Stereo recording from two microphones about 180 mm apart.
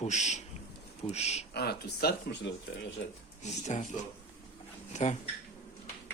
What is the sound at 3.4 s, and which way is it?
Speech, 40° left (ahead or behind).